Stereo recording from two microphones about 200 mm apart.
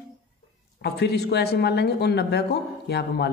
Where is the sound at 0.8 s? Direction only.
55° left (ahead or behind).